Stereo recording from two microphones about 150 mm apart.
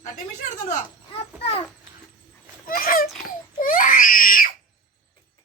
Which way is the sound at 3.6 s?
65° left (ahead or behind).